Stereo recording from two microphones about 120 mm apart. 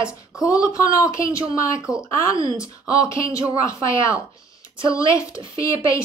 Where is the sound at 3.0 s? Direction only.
25° left (ahead or behind).